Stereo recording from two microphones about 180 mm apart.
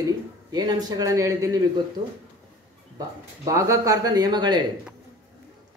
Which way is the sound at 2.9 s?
20° right (ahead or behind).